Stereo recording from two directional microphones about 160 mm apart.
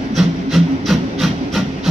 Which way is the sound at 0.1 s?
Centre (ahead or behind).